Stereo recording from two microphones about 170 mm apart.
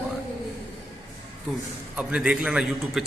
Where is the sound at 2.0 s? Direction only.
5° right (ahead or behind).